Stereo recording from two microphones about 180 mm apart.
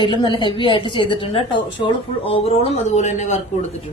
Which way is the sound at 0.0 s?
25° left (ahead or behind).